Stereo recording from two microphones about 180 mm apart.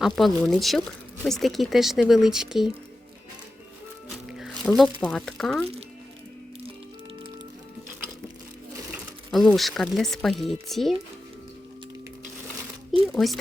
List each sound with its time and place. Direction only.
0.0 s speech: centre (ahead or behind)
4.4 s a sound: centre (ahead or behind)
4.9 s speech: 5° left (ahead or behind)
9.3 s speech: centre (ahead or behind)
13.1 s speech: centre (ahead or behind)